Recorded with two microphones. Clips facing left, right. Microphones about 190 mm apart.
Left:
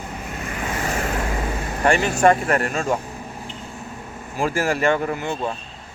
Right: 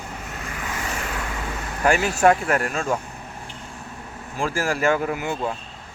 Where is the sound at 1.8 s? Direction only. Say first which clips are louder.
Left 1 dB; 5° right (ahead or behind).